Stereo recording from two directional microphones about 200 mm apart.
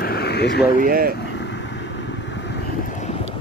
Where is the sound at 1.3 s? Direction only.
60° left (ahead or behind).